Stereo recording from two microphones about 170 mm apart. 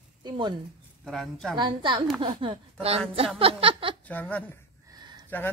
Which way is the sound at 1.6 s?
30° right (ahead or behind).